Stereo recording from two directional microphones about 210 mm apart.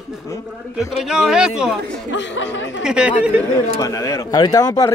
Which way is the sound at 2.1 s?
60° left (ahead or behind).